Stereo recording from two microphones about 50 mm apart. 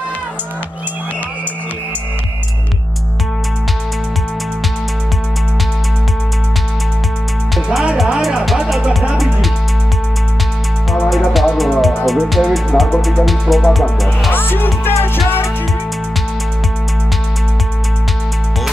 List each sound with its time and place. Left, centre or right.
10.9 s music: centre
14.3 s music: left